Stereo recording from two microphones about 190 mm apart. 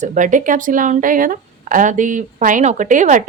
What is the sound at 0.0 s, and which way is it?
Speech, 40° right (ahead or behind).